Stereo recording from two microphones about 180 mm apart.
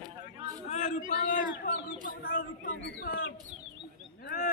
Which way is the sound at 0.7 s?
45° left (ahead or behind).